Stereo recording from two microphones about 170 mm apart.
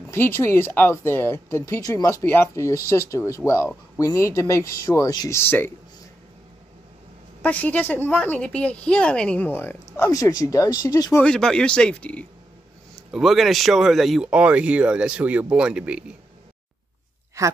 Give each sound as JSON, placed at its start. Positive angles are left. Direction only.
{"t": 0.1, "sound": "speech", "side_deg": 15}
{"t": 7.4, "sound": "speech", "side_deg": 10}
{"t": 11.2, "sound": "speech", "side_deg": 5}
{"t": 17.4, "sound": "a woman's voice", "side_deg": -20}